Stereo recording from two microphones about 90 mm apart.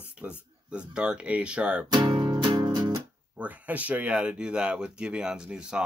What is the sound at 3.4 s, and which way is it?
Speech, 15° right (ahead or behind).